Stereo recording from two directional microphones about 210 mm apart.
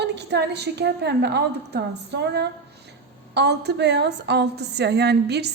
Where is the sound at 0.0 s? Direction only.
55° right (ahead or behind).